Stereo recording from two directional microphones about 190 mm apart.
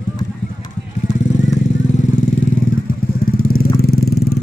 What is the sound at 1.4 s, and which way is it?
Vehicle, 40° left (ahead or behind).